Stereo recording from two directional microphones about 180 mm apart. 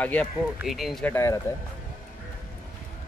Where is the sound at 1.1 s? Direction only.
15° left (ahead or behind).